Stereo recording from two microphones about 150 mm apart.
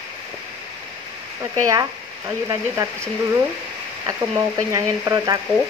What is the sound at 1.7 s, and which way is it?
Speech, 20° right (ahead or behind).